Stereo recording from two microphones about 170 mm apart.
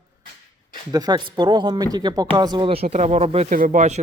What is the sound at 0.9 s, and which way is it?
Speech, 25° right (ahead or behind).